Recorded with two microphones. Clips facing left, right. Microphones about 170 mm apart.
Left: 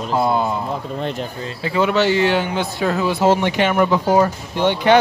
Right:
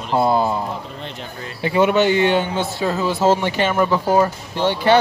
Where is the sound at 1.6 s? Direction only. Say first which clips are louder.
Right 2 dB; 20° right (ahead or behind).